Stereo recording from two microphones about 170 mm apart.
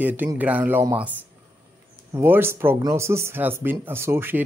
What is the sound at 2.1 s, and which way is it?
Speech, 15° right (ahead or behind).